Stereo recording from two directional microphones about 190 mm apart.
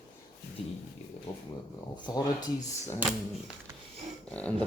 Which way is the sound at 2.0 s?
20° left (ahead or behind).